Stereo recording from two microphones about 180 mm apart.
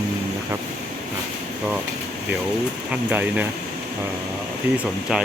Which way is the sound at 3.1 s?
10° right (ahead or behind).